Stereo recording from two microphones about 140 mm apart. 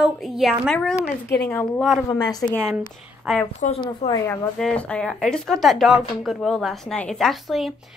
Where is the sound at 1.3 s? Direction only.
15° left (ahead or behind).